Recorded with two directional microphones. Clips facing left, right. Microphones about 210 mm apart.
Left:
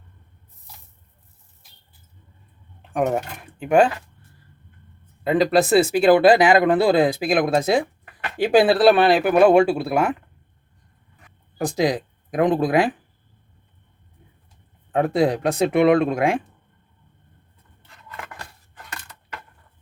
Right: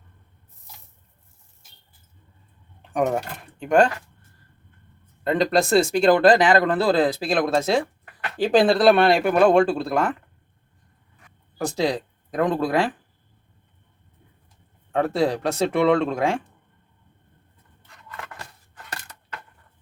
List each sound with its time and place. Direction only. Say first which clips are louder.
2.9 s speech: left 1 dB; centre (ahead or behind)
5.2 s speech: left 3 dB; 5° left (ahead or behind)
11.5 s speech: left 2 dB; 15° left (ahead or behind)
14.9 s speech: left 2 dB; 15° left (ahead or behind)